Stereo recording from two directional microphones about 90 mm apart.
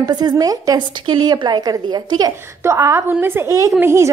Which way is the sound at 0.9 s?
55° right (ahead or behind).